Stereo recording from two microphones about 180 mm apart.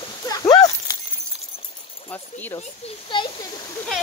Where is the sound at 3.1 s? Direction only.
25° left (ahead or behind).